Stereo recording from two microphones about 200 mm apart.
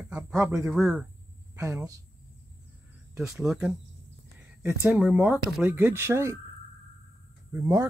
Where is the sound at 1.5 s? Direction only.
15° right (ahead or behind).